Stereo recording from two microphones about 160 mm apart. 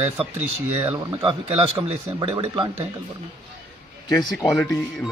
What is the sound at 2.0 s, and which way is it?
Speech, 20° right (ahead or behind).